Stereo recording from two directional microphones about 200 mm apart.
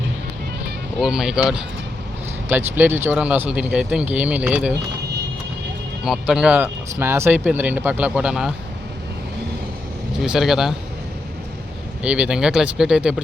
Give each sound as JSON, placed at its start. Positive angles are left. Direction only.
{"t": 1.0, "sound": "speech", "side_deg": -5}
{"t": 2.5, "sound": "speech", "side_deg": -10}
{"t": 6.1, "sound": "speech", "side_deg": -5}
{"t": 10.2, "sound": "speech", "side_deg": 0}
{"t": 12.0, "sound": "speech", "side_deg": -5}